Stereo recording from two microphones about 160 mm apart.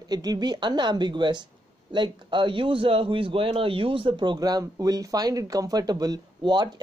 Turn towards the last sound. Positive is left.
turn(degrees=-25)  # may be behind; listen again after turning